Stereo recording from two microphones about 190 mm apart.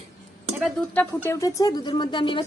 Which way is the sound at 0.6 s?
5° left (ahead or behind).